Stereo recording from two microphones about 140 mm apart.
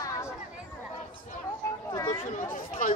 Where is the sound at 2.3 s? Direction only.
65° left (ahead or behind).